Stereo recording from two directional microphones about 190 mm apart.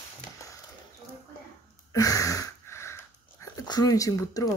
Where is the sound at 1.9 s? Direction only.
20° left (ahead or behind).